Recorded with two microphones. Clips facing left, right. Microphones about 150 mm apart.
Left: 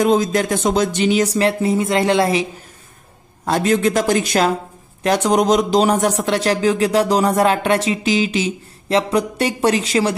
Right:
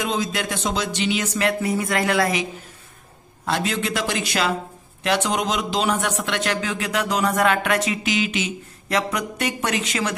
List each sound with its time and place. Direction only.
0.0 s a man's voice: 45° left (ahead or behind); by 2.4 s 30° left (ahead or behind)
3.4 s a man's voice: 45° left (ahead or behind)